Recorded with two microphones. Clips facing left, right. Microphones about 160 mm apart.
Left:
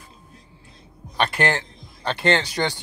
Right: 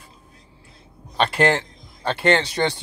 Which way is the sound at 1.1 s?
30° right (ahead or behind).